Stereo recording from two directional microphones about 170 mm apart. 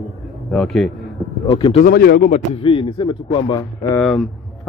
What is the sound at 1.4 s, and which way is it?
Speech, 25° left (ahead or behind).